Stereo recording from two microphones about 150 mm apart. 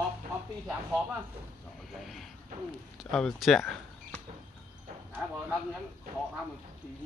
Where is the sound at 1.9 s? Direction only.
Centre (ahead or behind).